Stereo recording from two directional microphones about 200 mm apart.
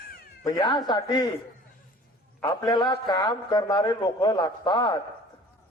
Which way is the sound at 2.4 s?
20° left (ahead or behind).